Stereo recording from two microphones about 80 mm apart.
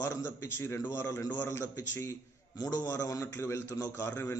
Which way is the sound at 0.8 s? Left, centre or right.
Left.